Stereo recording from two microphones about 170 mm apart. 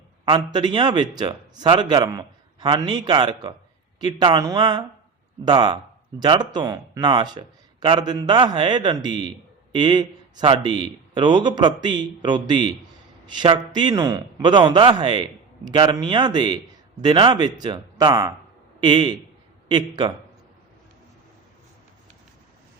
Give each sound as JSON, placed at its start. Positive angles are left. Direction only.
{"t": 0.3, "sound": "speech", "side_deg": -30}